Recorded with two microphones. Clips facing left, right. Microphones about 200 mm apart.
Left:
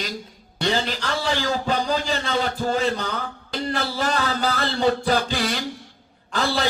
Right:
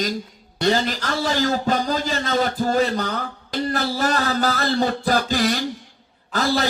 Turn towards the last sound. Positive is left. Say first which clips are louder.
# right 2 dB
turn(degrees=-40)  # may be behind; listen again after turning